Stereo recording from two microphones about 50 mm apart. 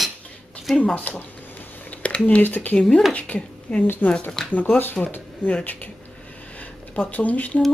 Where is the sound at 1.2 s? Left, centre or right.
Left.